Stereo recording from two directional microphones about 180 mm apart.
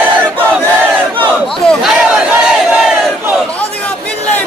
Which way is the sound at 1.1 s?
Centre (ahead or behind).